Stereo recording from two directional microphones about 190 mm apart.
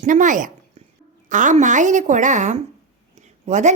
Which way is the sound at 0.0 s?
40° right (ahead or behind).